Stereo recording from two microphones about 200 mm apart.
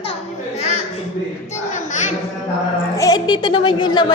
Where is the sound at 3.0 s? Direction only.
20° left (ahead or behind).